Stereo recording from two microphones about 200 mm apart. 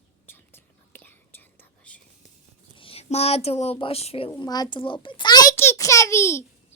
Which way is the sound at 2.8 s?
30° left (ahead or behind).